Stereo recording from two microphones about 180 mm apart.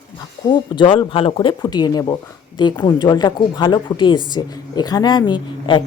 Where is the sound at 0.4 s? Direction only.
25° left (ahead or behind).